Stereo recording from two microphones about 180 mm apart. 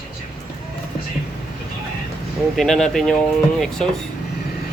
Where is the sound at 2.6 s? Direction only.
Centre (ahead or behind).